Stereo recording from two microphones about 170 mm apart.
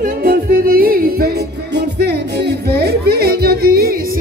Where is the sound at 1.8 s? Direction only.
80° right; by 3.9 s 65° right (ahead or behind).